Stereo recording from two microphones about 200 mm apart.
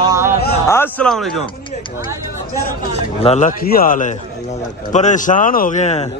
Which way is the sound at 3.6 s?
45° left (ahead or behind).